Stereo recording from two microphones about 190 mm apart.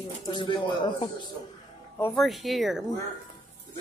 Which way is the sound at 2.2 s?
Centre (ahead or behind).